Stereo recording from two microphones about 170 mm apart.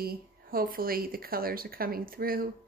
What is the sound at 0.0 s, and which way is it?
Speech, 60° right (ahead or behind).